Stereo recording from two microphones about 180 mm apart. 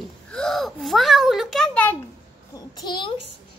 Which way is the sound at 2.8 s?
25° left (ahead or behind).